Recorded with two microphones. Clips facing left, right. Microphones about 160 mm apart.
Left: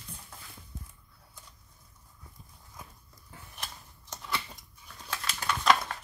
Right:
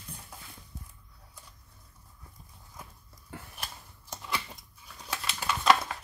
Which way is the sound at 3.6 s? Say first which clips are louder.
Right 1 dB; 5° right (ahead or behind).